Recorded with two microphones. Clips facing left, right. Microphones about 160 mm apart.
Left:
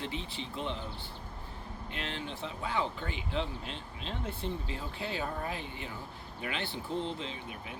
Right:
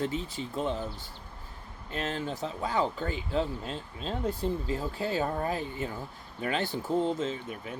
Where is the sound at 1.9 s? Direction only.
40° right (ahead or behind).